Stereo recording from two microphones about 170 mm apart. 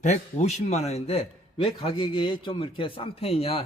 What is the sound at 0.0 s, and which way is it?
Speech, 45° left (ahead or behind).